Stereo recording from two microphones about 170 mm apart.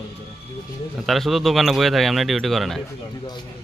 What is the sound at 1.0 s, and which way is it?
Speech, centre (ahead or behind).